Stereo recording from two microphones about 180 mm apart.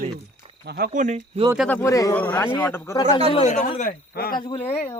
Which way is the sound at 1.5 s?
5° left (ahead or behind).